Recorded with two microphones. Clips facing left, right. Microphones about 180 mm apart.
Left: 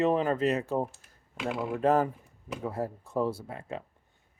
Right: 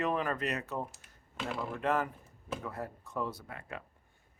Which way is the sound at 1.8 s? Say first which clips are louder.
Left 8 dB; 35° left (ahead or behind).